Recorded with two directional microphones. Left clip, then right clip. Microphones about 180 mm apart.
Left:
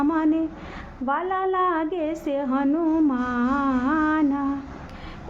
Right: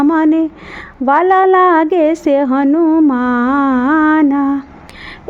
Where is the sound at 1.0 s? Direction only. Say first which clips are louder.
Right 15 dB; 50° right (ahead or behind).